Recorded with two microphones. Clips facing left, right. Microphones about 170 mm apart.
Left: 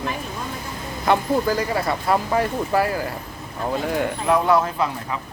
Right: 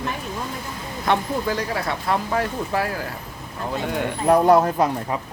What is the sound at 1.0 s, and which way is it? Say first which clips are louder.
Speech: left 3 dB; 5° left (ahead or behind).